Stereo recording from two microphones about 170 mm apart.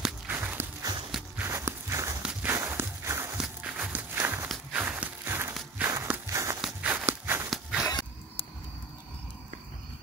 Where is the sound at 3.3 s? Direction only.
5° right (ahead or behind).